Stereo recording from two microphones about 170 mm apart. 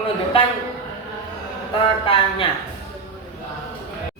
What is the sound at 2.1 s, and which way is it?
Speech, 35° left (ahead or behind).